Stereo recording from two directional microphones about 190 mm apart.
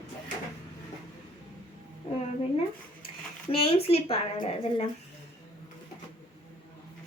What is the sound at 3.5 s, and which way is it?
A woman's voice, 30° left (ahead or behind).